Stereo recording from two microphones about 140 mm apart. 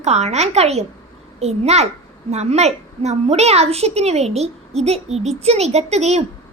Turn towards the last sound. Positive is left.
turn(degrees=-50)  # may be behind; listen again after turning